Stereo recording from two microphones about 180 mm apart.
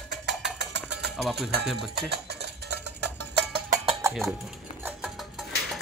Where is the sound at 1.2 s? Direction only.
Centre (ahead or behind).